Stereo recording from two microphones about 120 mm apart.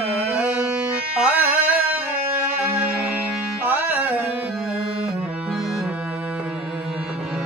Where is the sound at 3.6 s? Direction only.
15° right (ahead or behind).